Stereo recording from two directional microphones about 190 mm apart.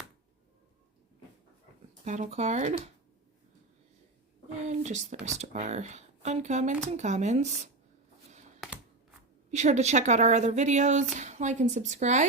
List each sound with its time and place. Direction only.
2.0 s speech: 40° right (ahead or behind)
4.6 s a sound: 40° right (ahead or behind)
5.4 s speech: 35° right (ahead or behind)
8.3 s computer keyboard: 40° right (ahead or behind)
9.5 s speech: 35° right (ahead or behind)